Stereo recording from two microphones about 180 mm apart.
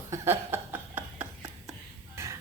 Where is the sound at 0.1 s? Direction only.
15° right (ahead or behind).